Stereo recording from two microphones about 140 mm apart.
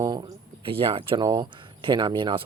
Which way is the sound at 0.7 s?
40° right (ahead or behind).